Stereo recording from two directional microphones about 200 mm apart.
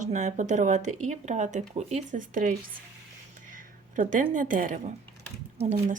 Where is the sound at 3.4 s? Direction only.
40° right (ahead or behind).